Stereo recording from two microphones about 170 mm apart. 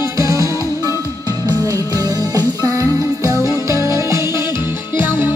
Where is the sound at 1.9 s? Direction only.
20° right (ahead or behind).